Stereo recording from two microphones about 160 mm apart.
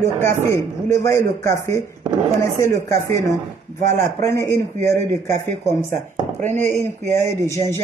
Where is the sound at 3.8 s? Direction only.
55° right (ahead or behind).